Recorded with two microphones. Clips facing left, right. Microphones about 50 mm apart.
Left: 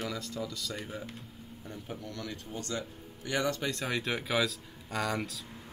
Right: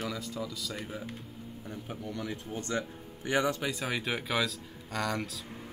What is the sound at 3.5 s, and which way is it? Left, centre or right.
Speech, centre.